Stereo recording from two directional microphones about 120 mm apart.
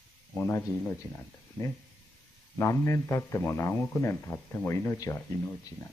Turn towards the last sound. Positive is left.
turn(degrees=20)  # may be behind; listen again after turning